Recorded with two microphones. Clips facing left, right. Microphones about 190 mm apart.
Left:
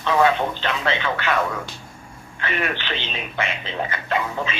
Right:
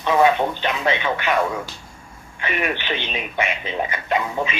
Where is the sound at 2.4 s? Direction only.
15° right (ahead or behind).